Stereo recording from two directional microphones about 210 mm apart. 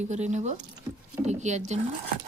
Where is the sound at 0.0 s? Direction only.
35° right (ahead or behind).